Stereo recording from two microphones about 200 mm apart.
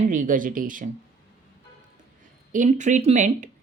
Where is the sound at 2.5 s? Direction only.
40° right (ahead or behind).